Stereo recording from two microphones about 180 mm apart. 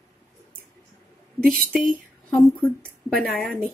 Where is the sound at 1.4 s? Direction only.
55° right (ahead or behind).